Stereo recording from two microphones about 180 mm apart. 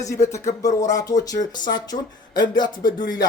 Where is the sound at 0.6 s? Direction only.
20° left (ahead or behind).